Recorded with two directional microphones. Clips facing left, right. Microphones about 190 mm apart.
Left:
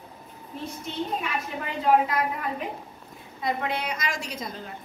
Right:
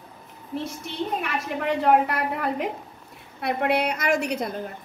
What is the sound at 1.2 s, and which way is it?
A woman's voice, 65° right (ahead or behind).